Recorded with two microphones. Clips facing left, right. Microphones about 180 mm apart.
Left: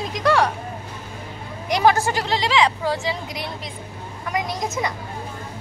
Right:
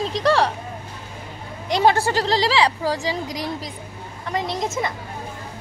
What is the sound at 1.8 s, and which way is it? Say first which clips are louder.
Speech: right 1 dB; 30° right (ahead or behind).